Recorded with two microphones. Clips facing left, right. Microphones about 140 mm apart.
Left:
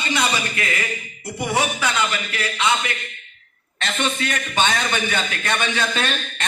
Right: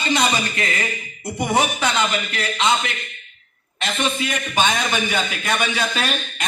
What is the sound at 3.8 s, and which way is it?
A man's voice, 5° right (ahead or behind).